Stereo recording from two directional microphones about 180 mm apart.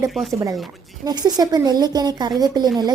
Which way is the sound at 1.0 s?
20° right (ahead or behind).